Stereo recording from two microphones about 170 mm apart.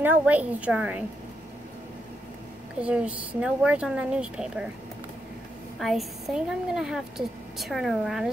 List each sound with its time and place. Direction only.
0.0 s speech: 10° right (ahead or behind)
2.8 s speech: 5° right (ahead or behind)
5.8 s a woman's voice: centre (ahead or behind)